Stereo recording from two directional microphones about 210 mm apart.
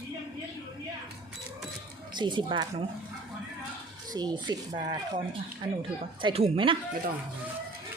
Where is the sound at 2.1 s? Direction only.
20° right (ahead or behind).